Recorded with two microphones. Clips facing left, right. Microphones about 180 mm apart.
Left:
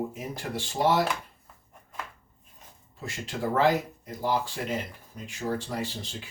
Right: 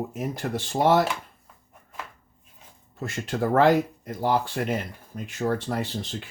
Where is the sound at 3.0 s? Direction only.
55° right (ahead or behind).